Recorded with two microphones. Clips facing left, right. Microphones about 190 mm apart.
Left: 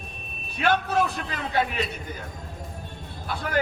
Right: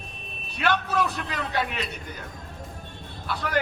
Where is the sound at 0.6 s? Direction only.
50° left (ahead or behind).